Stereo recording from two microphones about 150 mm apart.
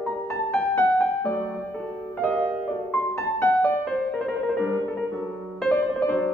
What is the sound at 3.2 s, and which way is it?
Music, 15° left (ahead or behind).